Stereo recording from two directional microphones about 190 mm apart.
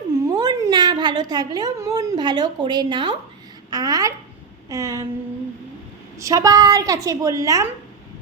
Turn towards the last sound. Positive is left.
turn(degrees=-15)  # may be behind; listen again after turning